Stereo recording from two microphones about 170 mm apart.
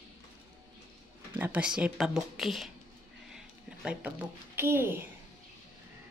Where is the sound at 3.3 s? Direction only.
5° right (ahead or behind).